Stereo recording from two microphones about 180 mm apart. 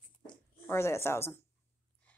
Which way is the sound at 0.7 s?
15° left (ahead or behind).